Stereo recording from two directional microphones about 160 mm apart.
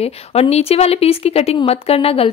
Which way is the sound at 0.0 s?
40° left (ahead or behind).